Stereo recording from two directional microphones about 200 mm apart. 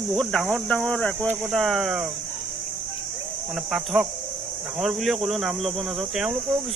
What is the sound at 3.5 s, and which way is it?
Speech, centre (ahead or behind).